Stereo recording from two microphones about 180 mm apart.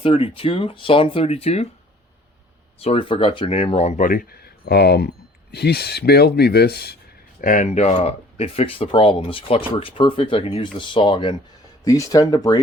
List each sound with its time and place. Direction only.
0.0 s speech: 30° left (ahead or behind)
2.7 s speech: 35° left (ahead or behind); by 6.9 s 60° left (ahead or behind)
7.4 s speech: 40° left (ahead or behind); by 12.5 s 20° left (ahead or behind)